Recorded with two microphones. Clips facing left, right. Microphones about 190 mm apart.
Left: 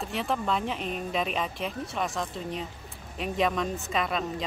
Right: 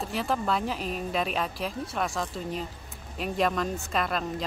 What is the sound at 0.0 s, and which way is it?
A woman's voice, centre (ahead or behind).